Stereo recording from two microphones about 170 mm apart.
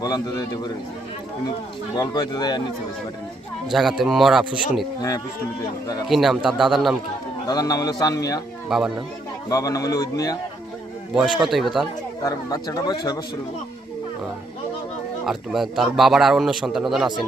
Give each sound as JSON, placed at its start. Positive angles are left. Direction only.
{"t": 0.0, "sound": "a man's voice", "side_deg": 20}
{"t": 2.0, "sound": "a man's voice", "side_deg": 25}
{"t": 3.7, "sound": "a man's voice", "side_deg": 0}
{"t": 6.1, "sound": "a man's voice", "side_deg": 0}
{"t": 7.4, "sound": "a man's voice", "side_deg": 20}
{"t": 8.7, "sound": "a man's voice", "side_deg": 0}
{"t": 9.5, "sound": "a man's voice", "side_deg": 20}
{"t": 11.3, "sound": "a man's voice", "side_deg": 0}
{"t": 12.2, "sound": "a man's voice", "side_deg": 20}
{"t": 15.3, "sound": "a man's voice", "side_deg": 0}